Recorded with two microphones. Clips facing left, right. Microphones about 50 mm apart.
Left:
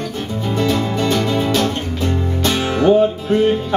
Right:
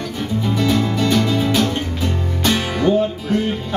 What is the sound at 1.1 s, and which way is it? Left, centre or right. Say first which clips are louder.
Music: right 1 dB; centre.